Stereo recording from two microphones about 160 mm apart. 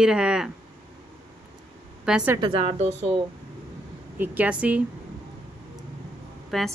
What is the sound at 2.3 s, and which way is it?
Speech, 35° right (ahead or behind).